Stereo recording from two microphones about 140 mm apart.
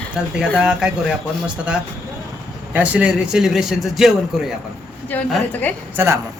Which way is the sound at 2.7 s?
10° right (ahead or behind).